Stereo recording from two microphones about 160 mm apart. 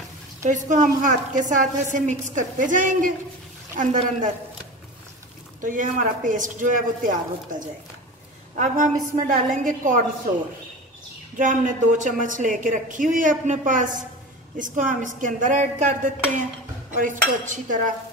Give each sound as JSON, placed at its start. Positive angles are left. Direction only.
{"t": 0.4, "sound": "a woman's voice", "side_deg": -50}
{"t": 5.6, "sound": "speech", "side_deg": -55}
{"t": 8.5, "sound": "speech", "side_deg": -55}
{"t": 11.3, "sound": "a woman's voice", "side_deg": -55}
{"t": 16.9, "sound": "speech", "side_deg": -55}